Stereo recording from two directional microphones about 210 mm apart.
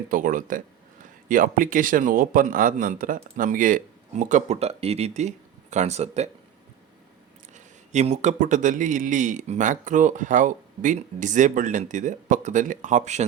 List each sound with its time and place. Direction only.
0.1 s a man's voice: 40° right (ahead or behind)
7.5 s a man's voice: 35° right (ahead or behind)